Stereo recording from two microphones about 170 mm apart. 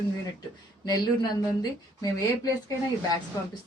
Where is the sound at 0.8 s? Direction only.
25° left (ahead or behind).